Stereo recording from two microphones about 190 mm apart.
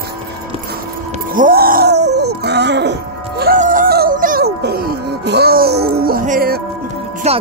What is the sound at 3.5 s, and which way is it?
Music, 45° right (ahead or behind).